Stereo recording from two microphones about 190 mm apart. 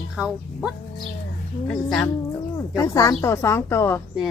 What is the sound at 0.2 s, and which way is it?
Speech, 5° right (ahead or behind).